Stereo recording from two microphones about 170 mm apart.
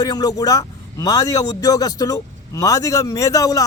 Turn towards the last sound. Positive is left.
turn(degrees=20)  # may be behind; listen again after turning